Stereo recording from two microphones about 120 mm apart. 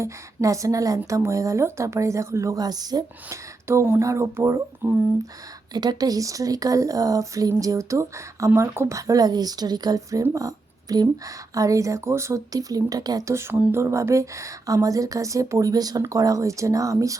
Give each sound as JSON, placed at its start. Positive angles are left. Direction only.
{"t": 0.0, "sound": "speech", "side_deg": -25}
{"t": 3.7, "sound": "speech", "side_deg": -20}
{"t": 5.7, "sound": "a woman's voice", "side_deg": -35}